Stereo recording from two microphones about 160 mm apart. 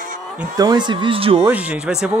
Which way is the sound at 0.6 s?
25° right (ahead or behind).